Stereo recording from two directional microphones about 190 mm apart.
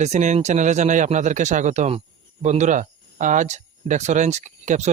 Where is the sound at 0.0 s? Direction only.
40° right (ahead or behind).